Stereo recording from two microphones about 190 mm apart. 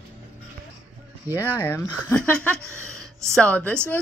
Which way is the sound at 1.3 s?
10° left (ahead or behind).